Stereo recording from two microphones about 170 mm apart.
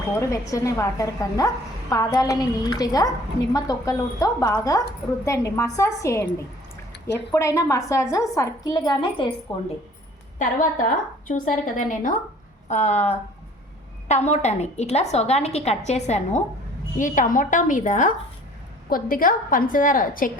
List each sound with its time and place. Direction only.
0.2 s a woman's voice: 20° left (ahead or behind)
7.3 s a woman's voice: 15° left (ahead or behind)
10.3 s a woman's voice: 50° left (ahead or behind)